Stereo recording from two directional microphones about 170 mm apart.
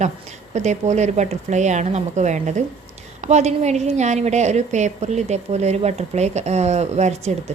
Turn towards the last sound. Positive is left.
turn(degrees=-40)  # may be behind; listen again after turning